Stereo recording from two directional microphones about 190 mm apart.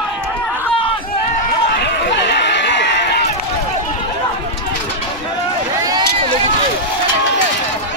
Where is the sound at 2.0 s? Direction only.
70° left (ahead or behind).